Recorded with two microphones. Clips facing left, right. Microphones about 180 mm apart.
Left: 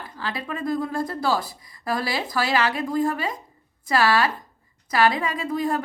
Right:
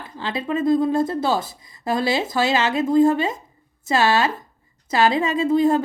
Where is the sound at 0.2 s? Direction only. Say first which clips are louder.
Right 7 dB; 20° right (ahead or behind).